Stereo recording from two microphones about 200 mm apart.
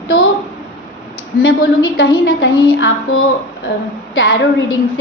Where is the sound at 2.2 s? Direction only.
70° left (ahead or behind).